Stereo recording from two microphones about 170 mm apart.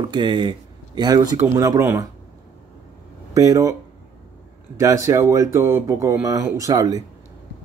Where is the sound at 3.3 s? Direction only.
20° right (ahead or behind).